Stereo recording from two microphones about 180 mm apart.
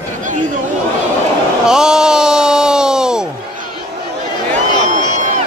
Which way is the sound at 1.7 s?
5° right (ahead or behind).